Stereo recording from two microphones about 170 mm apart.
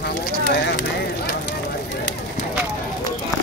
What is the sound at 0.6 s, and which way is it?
Speech, 90° left.